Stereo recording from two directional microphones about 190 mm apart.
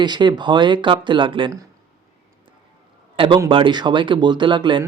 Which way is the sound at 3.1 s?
30° right (ahead or behind).